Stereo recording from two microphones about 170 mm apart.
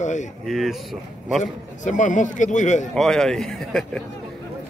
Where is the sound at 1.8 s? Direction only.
45° left (ahead or behind).